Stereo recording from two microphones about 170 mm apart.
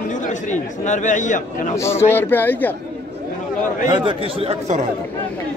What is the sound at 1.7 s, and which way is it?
Speech, 15° left (ahead or behind).